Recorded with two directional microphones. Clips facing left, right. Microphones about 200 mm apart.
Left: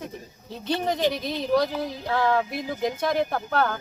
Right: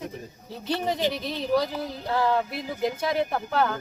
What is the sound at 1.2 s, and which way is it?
Speech, 40° left (ahead or behind).